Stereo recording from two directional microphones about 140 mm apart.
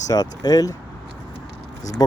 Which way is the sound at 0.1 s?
25° left (ahead or behind).